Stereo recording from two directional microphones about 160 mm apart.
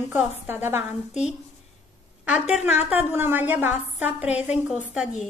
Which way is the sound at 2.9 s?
10° right (ahead or behind).